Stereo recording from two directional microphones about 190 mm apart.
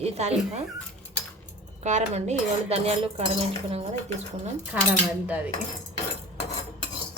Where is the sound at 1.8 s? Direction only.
35° right (ahead or behind).